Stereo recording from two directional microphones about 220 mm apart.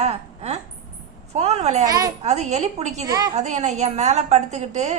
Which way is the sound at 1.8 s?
15° right (ahead or behind).